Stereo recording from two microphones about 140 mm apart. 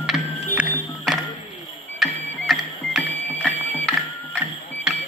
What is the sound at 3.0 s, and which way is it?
Music, 10° left (ahead or behind).